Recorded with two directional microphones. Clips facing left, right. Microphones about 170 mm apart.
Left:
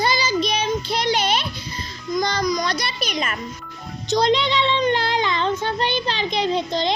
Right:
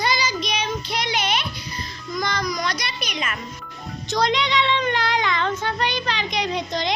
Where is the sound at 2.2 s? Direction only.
25° left (ahead or behind).